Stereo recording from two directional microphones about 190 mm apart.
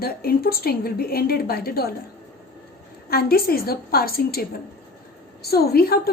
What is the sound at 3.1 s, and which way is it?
A woman's voice, 55° left (ahead or behind).